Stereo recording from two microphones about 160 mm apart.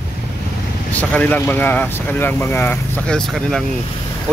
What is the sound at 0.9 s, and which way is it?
Speech, 10° left (ahead or behind).